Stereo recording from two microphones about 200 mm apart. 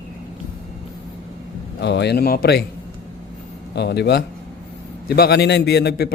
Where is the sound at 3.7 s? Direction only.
55° left (ahead or behind).